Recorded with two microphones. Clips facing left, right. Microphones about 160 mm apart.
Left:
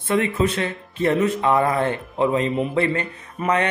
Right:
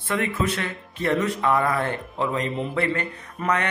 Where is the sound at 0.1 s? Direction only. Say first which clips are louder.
Left 5 dB; 20° left (ahead or behind).